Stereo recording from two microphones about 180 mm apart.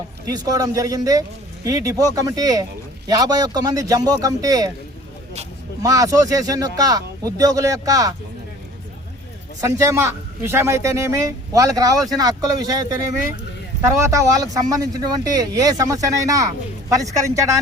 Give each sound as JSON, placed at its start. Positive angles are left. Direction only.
{"t": 0.3, "sound": "speech", "side_deg": -20}
{"t": 5.8, "sound": "speech", "side_deg": -20}
{"t": 9.6, "sound": "a man's voice", "side_deg": -15}